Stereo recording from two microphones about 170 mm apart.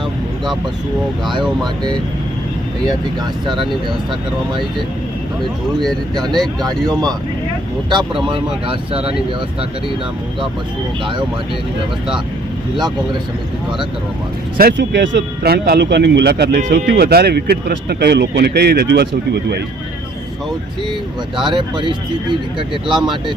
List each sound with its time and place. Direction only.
3.4 s speech: 25° right (ahead or behind)
6.6 s speech: 25° right (ahead or behind)
14.6 s speech: 70° right (ahead or behind)
21.3 s speech: 25° right (ahead or behind)
23.0 s speech: centre (ahead or behind)